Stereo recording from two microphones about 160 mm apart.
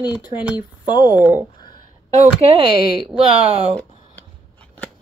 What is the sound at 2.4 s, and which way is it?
Speech, 35° right (ahead or behind).